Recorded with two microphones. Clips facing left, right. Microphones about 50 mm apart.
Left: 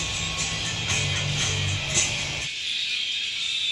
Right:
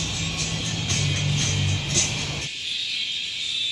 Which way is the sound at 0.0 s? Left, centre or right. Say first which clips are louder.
Even; centre.